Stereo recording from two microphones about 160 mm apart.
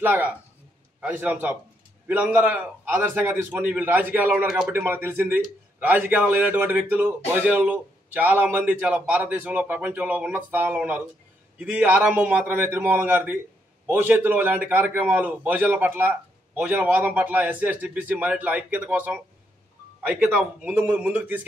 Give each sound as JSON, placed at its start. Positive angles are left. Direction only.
{"t": 0.0, "sound": "a man's voice", "side_deg": -10}